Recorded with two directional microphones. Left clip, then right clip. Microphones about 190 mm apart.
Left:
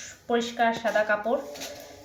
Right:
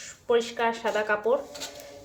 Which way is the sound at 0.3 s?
70° right (ahead or behind).